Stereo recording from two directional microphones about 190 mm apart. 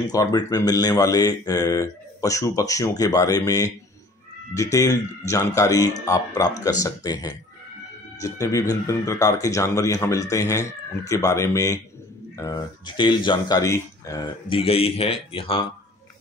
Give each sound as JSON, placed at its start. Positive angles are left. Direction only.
{"t": 0.1, "sound": "speech", "side_deg": 20}